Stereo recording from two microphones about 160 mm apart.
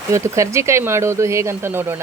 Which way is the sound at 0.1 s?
20° right (ahead or behind).